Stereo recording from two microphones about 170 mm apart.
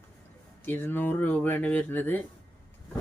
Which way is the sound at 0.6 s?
10° left (ahead or behind).